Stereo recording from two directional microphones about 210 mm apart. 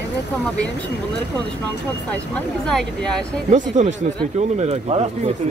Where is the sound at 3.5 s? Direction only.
35° right (ahead or behind).